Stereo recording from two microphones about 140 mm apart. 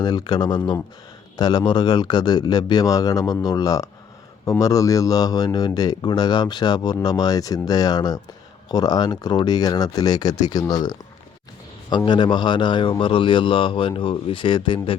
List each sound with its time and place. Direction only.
0.0 s speech: 30° left (ahead or behind)